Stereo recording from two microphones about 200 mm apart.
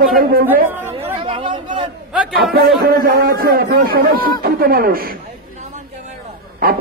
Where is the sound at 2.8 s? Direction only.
45° right (ahead or behind).